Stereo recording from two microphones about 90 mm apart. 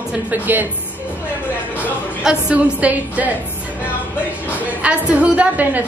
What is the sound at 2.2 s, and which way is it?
A woman's voice, 10° right (ahead or behind).